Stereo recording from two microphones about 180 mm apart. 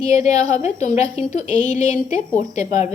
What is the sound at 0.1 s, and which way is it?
A woman's voice, 40° left (ahead or behind).